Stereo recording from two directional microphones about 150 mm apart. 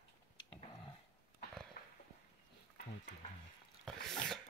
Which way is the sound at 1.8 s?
65° left (ahead or behind).